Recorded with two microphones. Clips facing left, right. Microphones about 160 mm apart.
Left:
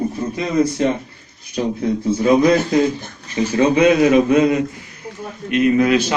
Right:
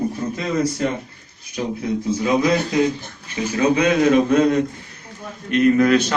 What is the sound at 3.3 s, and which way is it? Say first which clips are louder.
Speech: left 3 dB; 30° left (ahead or behind).